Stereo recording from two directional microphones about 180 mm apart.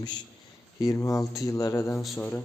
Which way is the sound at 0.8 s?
15° left (ahead or behind).